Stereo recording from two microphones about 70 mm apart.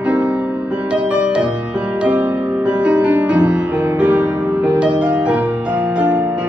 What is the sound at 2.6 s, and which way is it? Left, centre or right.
Music, centre.